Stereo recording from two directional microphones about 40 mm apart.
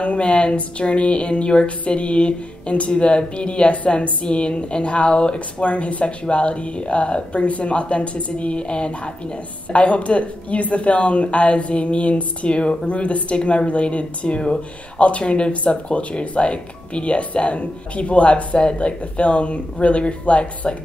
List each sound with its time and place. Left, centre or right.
0.0 s a woman's voice: left